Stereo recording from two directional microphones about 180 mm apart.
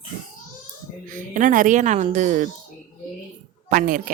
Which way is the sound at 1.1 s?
45° right (ahead or behind).